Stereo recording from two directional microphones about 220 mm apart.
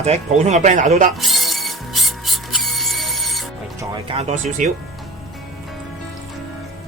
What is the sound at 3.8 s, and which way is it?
Speech, 25° right (ahead or behind).